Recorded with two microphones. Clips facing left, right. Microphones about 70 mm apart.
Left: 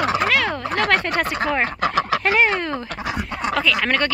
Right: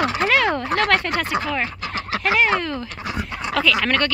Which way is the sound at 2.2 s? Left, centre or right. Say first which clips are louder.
Right 1 dB; left.